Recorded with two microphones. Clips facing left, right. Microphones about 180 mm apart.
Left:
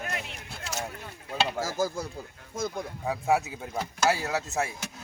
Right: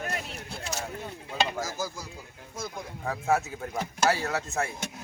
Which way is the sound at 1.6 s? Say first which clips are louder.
Left 5 dB; 45° left (ahead or behind).